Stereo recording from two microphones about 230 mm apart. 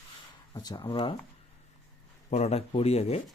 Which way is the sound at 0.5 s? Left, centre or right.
Centre.